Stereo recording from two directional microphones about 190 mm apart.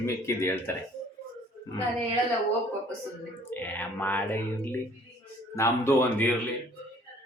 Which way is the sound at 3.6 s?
10° left (ahead or behind).